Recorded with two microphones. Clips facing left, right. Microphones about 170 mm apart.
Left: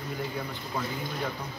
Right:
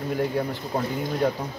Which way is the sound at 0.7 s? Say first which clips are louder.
Right 7 dB; 40° right (ahead or behind).